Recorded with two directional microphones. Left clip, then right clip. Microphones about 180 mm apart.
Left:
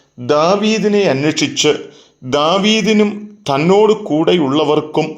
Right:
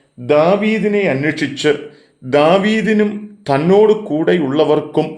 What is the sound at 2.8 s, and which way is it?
Speech, 20° left (ahead or behind).